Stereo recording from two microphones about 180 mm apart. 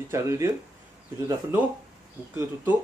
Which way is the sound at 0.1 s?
15° right (ahead or behind).